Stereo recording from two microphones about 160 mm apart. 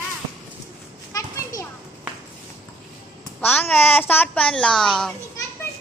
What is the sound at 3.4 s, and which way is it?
A child's voice, 15° left (ahead or behind).